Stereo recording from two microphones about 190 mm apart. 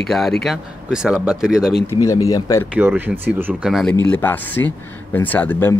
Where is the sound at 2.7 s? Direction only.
10° right (ahead or behind).